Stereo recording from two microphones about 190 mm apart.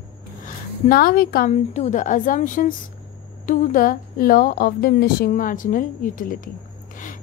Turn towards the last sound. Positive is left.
turn(degrees=45)  # may be behind; listen again after turning